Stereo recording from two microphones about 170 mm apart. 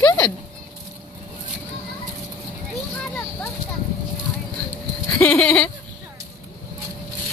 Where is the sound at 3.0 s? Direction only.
10° left (ahead or behind).